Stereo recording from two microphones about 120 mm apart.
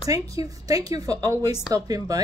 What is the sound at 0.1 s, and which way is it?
A woman's voice, 30° right (ahead or behind).